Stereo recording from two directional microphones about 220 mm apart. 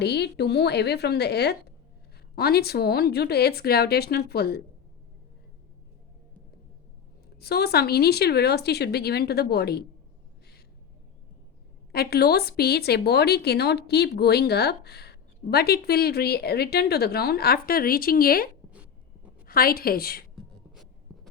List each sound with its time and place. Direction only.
0.0 s speech: 50° left (ahead or behind)
7.3 s speech: 45° left (ahead or behind)
11.9 s speech: 45° left (ahead or behind)
18.7 s a sound: 5° right (ahead or behind)
19.5 s speech: 45° left (ahead or behind)
21.1 s writing: centre (ahead or behind)